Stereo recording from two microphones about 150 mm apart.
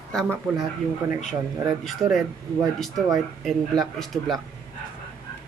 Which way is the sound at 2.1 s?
Centre (ahead or behind).